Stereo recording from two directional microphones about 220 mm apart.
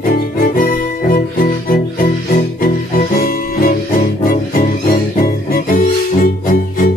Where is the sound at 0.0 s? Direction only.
40° left (ahead or behind).